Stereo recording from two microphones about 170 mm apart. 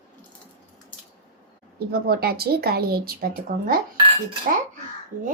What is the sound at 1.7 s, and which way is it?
Speech, 65° right (ahead or behind).